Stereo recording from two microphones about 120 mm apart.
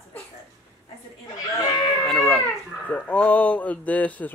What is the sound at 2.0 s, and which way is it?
Speech, centre (ahead or behind).